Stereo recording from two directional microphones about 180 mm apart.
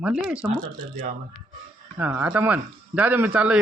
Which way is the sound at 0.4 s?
45° right (ahead or behind).